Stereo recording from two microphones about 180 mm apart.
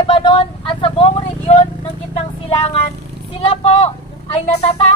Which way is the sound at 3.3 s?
35° left (ahead or behind).